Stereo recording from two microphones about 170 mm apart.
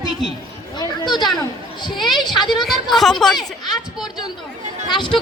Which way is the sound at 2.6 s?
Centre (ahead or behind).